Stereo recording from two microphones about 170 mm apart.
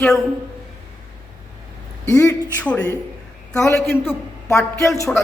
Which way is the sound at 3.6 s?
15° left (ahead or behind).